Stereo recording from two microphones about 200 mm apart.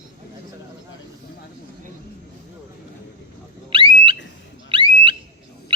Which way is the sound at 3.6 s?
25° right (ahead or behind).